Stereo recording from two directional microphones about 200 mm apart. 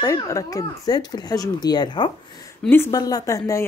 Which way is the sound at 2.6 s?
10° left (ahead or behind).